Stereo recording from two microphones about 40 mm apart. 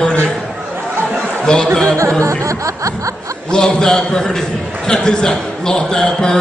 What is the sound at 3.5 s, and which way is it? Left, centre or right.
A man's voice, centre.